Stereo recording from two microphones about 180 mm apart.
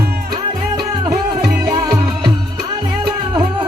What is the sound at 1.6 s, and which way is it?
Music, 20° right (ahead or behind).